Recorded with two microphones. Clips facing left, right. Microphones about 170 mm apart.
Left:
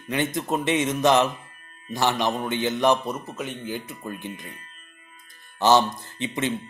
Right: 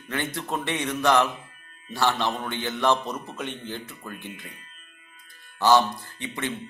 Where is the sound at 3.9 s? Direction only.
15° left (ahead or behind).